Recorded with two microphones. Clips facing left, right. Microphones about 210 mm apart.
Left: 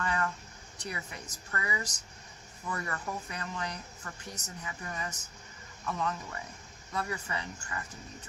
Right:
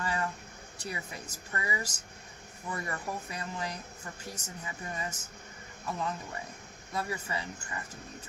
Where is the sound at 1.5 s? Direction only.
30° right (ahead or behind).